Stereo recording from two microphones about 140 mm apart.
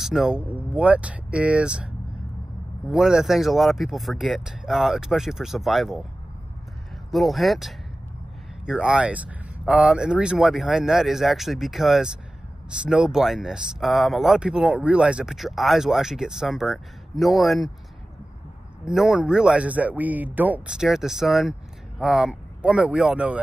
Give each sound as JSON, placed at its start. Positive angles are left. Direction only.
{"t": 0.0, "sound": "speech", "side_deg": -5}
{"t": 2.9, "sound": "speech", "side_deg": -5}
{"t": 7.1, "sound": "speech", "side_deg": 0}
{"t": 18.9, "sound": "speech", "side_deg": -5}